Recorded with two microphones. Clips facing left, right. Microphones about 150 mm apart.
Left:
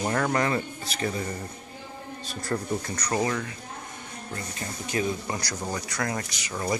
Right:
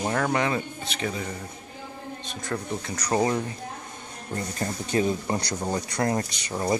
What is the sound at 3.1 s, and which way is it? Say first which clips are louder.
Speech: right 3 dB; 25° right (ahead or behind).